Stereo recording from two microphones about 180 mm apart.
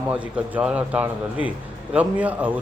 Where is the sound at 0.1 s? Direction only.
5° right (ahead or behind).